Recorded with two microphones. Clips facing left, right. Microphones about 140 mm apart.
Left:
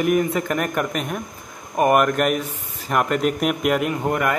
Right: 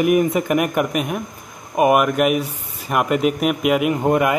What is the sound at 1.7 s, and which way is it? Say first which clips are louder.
Speech: right 2 dB; 5° right (ahead or behind).